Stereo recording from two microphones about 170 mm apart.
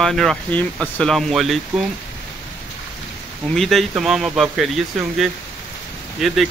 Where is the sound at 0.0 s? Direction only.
Centre (ahead or behind).